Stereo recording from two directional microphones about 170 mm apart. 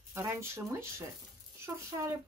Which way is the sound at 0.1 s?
15° right (ahead or behind).